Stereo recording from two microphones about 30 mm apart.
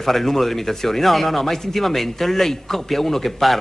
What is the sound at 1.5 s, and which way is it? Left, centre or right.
A man's voice, centre.